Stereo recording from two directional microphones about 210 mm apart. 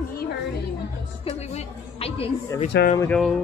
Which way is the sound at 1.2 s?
30° left (ahead or behind).